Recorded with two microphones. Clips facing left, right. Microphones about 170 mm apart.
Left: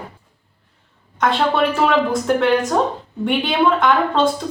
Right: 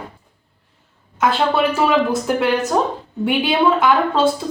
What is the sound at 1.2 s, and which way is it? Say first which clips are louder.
A woman's voice: even; 5° right (ahead or behind).